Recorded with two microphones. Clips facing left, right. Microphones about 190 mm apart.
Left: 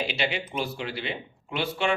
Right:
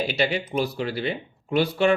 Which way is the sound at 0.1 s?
40° right (ahead or behind).